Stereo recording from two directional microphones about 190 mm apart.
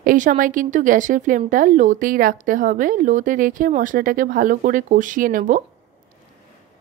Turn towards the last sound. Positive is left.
turn(degrees=-45)  # may be behind; listen again after turning